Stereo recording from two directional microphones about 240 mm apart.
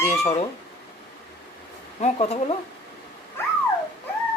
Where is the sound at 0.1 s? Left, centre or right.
Left.